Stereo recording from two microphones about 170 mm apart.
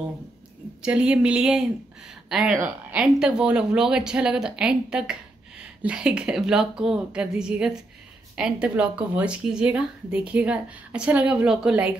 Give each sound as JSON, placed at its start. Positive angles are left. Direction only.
{"t": 0.8, "sound": "a woman's voice", "side_deg": -5}